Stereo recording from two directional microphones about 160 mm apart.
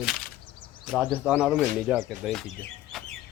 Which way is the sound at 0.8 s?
5° right (ahead or behind).